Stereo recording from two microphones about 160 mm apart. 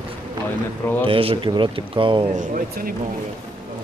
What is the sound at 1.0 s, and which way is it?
Speech, 35° right (ahead or behind).